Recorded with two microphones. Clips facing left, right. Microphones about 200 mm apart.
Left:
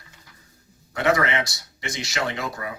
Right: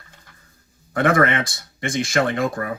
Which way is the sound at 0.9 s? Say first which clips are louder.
Right 4 dB; 50° right (ahead or behind).